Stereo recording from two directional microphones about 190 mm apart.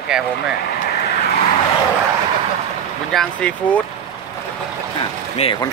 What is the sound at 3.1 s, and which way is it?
Speech, 5° left (ahead or behind).